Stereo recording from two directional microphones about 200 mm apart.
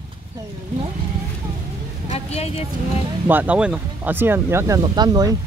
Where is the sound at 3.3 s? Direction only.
10° right (ahead or behind).